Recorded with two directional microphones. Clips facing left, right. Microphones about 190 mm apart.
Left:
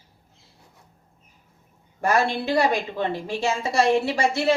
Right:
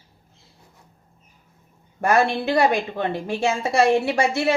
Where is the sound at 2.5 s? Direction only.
60° right (ahead or behind).